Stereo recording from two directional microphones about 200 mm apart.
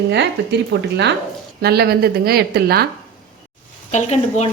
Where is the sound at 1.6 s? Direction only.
55° right (ahead or behind).